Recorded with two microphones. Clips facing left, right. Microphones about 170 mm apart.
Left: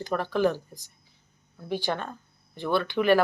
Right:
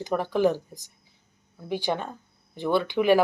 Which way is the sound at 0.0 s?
15° right (ahead or behind).